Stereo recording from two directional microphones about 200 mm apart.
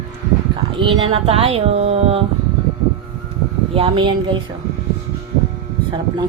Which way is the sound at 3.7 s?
25° right (ahead or behind).